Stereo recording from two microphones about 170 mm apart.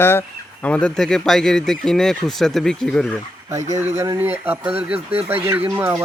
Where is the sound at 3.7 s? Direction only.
15° right (ahead or behind).